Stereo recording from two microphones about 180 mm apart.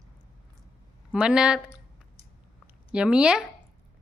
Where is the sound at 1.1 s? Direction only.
5° right (ahead or behind).